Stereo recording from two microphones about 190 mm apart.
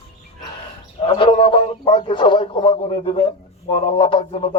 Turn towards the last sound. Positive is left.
turn(degrees=30)  # may be behind; listen again after turning